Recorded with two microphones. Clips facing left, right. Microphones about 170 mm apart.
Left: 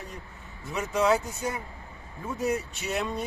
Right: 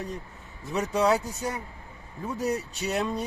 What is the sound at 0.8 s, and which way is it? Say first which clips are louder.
Speech: right 1 dB; 35° right (ahead or behind).